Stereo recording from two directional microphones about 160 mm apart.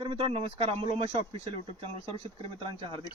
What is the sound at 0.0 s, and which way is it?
Speech, 30° right (ahead or behind).